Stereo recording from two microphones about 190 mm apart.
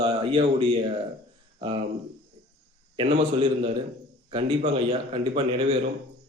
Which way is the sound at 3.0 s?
30° right (ahead or behind).